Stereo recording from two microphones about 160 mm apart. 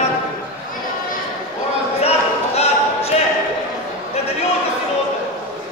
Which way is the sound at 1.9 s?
40° left (ahead or behind).